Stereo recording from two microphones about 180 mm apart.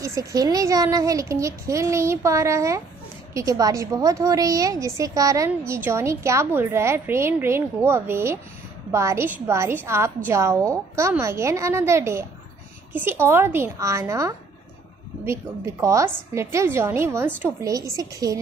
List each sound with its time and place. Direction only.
0.0 s a woman's voice: 20° right (ahead or behind)